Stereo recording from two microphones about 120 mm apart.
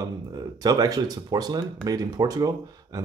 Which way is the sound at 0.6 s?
30° right (ahead or behind).